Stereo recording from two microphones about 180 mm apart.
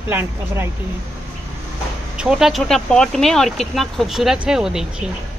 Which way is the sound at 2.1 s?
5° right (ahead or behind).